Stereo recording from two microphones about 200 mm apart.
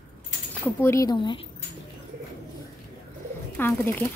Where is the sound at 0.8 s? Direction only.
15° left (ahead or behind).